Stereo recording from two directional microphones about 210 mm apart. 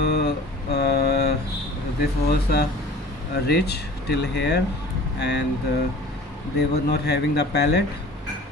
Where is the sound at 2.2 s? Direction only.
50° left (ahead or behind).